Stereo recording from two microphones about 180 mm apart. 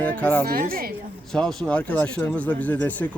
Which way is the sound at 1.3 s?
Centre (ahead or behind).